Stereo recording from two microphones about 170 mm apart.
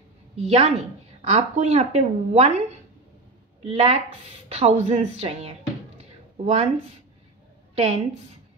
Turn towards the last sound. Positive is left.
turn(degrees=-40)  # may be behind; listen again after turning